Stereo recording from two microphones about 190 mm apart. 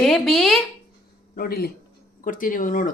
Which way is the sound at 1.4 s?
55° left (ahead or behind).